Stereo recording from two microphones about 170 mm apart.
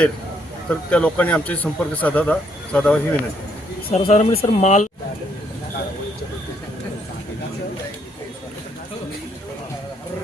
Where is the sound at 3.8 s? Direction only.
35° left (ahead or behind).